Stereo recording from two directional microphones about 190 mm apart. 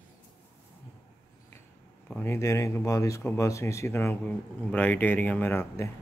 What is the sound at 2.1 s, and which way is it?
Speech, 15° left (ahead or behind).